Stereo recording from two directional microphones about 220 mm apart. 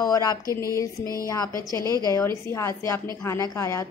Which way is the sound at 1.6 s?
15° right (ahead or behind).